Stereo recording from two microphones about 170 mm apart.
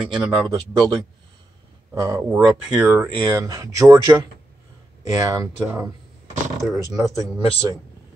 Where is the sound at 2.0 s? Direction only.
20° right (ahead or behind).